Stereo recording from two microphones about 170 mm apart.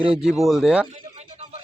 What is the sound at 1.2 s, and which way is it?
Music, 40° right (ahead or behind).